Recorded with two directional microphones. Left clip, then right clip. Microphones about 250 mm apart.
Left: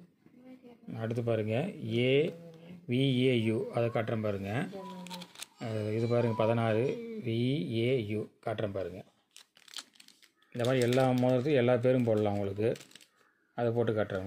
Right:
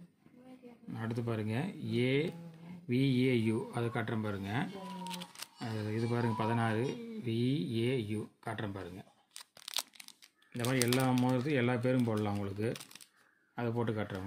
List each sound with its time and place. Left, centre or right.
0.9 s speech: centre
5.1 s camera: centre
5.7 s speech: centre
10.5 s speech: centre